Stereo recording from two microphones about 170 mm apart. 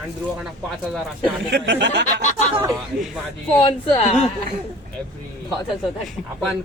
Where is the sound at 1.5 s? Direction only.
90° right.